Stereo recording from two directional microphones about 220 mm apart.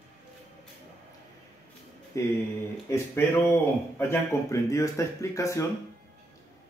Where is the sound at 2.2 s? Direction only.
15° left (ahead or behind).